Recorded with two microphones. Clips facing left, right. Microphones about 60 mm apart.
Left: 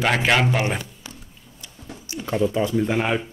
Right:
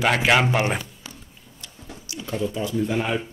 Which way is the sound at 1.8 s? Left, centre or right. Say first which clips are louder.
Left 4 dB; left.